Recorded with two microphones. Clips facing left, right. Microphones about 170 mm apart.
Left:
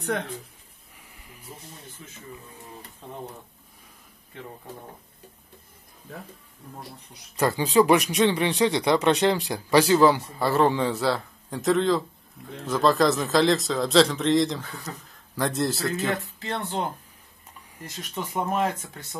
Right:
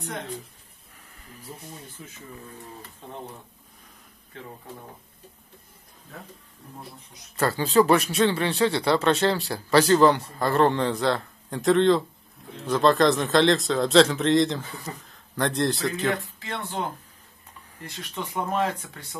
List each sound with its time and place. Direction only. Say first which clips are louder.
7.3 s speech: even; 15° left (ahead or behind)
16.3 s speech: left 2 dB; 35° left (ahead or behind)
18.1 s speech: left 1 dB; 10° left (ahead or behind)